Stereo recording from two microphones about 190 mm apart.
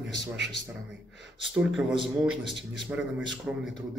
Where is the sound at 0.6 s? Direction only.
65° left (ahead or behind).